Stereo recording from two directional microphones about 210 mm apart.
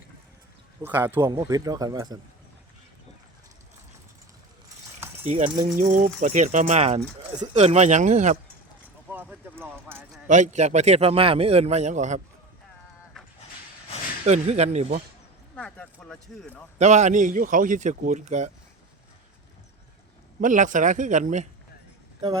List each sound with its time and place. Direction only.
0.8 s a man's voice: 10° right (ahead or behind)
5.2 s a man's voice: 35° right (ahead or behind)
9.0 s speech: 10° right (ahead or behind)
10.2 s a man's voice: 35° right (ahead or behind)
14.3 s a man's voice: 30° right (ahead or behind)
15.5 s speech: 5° left (ahead or behind)
16.7 s a man's voice: 35° right (ahead or behind)
20.4 s a man's voice: 40° right (ahead or behind)